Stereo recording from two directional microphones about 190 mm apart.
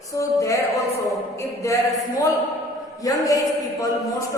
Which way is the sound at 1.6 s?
15° left (ahead or behind).